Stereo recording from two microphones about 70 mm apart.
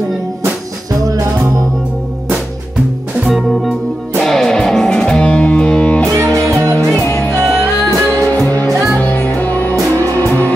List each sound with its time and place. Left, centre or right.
3.3 s music: centre; by 6.3 s left
7.6 s music: left